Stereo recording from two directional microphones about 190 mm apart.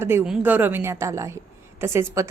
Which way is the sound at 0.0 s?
15° right (ahead or behind).